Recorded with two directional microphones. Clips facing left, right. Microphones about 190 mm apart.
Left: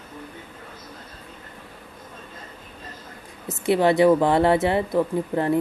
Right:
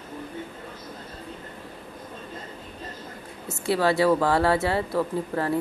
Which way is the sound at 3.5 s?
20° left (ahead or behind).